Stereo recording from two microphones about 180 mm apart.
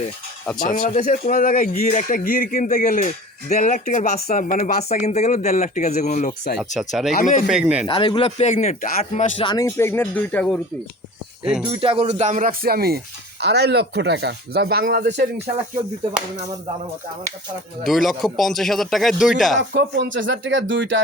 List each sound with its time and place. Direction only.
0.6 s a man's voice: 50° left (ahead or behind)
6.7 s speech: centre (ahead or behind)
7.1 s a man's voice: 50° left (ahead or behind)
7.4 s speech: 5° right (ahead or behind)
7.9 s speech: 25° left (ahead or behind); by 9.3 s 45° left (ahead or behind)
9.4 s speech: 25° left (ahead or behind)
9.6 s speech: 15° left (ahead or behind)
11.4 s speech: 5° right (ahead or behind)
11.7 s speech: 30° right (ahead or behind); by 15.3 s 65° right (ahead or behind)
17.8 s speech: centre (ahead or behind)
19.7 s speech: 80° right